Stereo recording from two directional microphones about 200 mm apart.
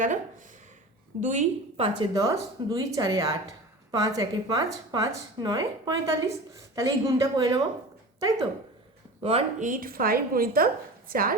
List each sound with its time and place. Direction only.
0.0 s a woman's voice: 40° right (ahead or behind); by 8.4 s 20° right (ahead or behind)
9.2 s a woman's voice: 35° right (ahead or behind)